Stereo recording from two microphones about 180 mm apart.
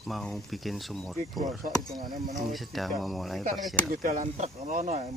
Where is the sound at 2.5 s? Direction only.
Centre (ahead or behind).